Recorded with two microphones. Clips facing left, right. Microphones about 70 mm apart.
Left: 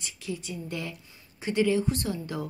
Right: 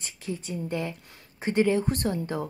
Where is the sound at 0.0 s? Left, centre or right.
Right.